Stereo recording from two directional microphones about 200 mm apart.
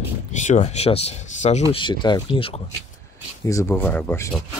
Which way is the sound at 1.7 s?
25° left (ahead or behind).